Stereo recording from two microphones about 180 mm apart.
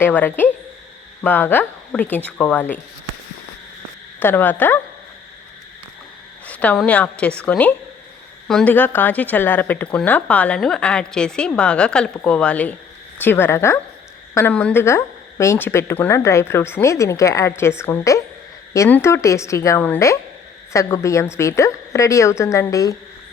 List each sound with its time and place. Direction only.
0.0 s speech: 10° left (ahead or behind)
4.2 s speech: 10° left (ahead or behind)
6.4 s speech: 10° left (ahead or behind)